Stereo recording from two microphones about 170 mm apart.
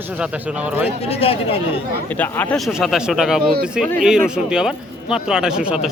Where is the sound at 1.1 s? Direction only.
35° left (ahead or behind).